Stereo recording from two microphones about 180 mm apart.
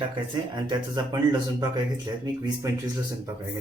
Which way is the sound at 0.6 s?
25° right (ahead or behind).